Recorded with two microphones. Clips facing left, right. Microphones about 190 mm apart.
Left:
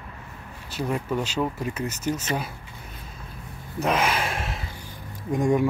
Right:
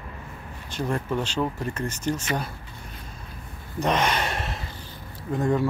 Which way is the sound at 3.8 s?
5° left (ahead or behind).